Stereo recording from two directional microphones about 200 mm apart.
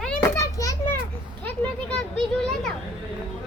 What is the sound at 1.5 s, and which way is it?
Children playing, 5° left (ahead or behind).